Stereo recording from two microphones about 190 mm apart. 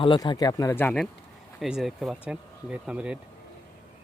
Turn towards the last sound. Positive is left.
turn(degrees=-5)  # may be behind; listen again after turning